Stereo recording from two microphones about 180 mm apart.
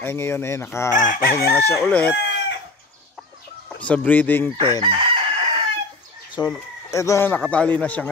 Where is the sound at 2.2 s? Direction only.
75° left (ahead or behind).